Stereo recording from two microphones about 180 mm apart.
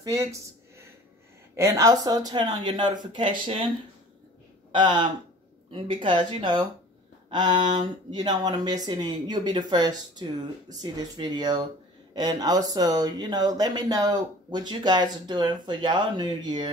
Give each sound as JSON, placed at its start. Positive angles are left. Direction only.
{"t": 0.0, "sound": "speech", "side_deg": -15}
{"t": 1.6, "sound": "speech", "side_deg": -15}
{"t": 4.7, "sound": "speech", "side_deg": -25}